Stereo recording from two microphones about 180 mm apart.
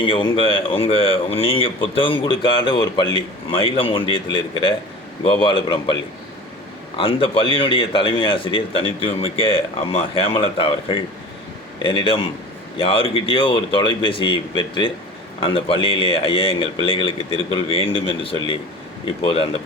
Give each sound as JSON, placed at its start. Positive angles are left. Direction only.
{"t": 0.0, "sound": "a man's voice", "side_deg": 30}